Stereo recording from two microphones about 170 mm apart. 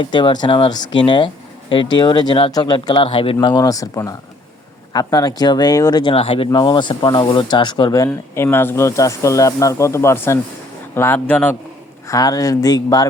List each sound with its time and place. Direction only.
0.0 s a man's voice: 30° left (ahead or behind); by 11.5 s 10° left (ahead or behind)
12.0 s speech: 20° left (ahead or behind)